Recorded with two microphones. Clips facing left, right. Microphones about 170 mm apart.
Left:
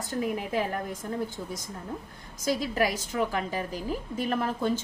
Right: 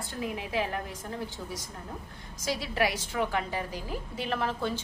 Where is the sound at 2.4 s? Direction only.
45° left (ahead or behind).